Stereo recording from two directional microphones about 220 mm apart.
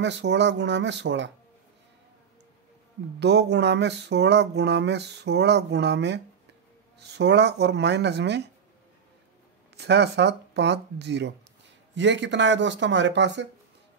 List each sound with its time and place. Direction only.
0.0 s speech: 55° right (ahead or behind)
3.2 s speech: 50° right (ahead or behind)
9.8 s speech: 50° right (ahead or behind)